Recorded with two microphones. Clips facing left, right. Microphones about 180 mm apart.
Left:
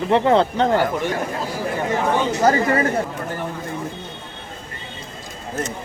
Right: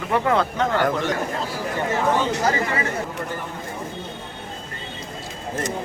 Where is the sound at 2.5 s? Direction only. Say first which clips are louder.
Left 6 dB; 45° left (ahead or behind).